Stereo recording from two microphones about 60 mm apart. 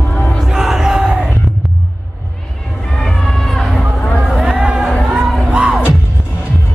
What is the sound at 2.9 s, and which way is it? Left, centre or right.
Run, centre.